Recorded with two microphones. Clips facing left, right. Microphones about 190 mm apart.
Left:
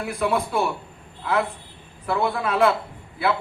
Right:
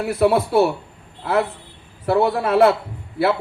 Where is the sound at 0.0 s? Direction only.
40° right (ahead or behind).